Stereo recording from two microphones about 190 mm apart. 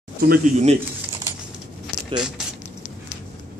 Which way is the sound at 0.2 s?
45° right (ahead or behind).